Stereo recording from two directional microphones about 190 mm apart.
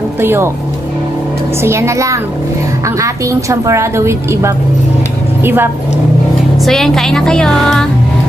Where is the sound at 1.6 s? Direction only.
15° right (ahead or behind).